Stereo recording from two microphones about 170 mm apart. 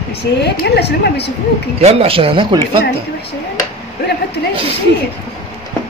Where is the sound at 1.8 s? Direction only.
35° right (ahead or behind).